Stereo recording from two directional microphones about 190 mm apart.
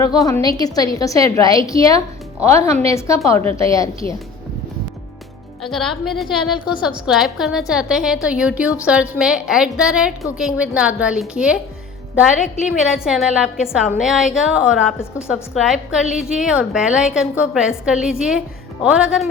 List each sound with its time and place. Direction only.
0.0 s a woman's voice: 20° left (ahead or behind)
5.6 s a woman's voice: centre (ahead or behind)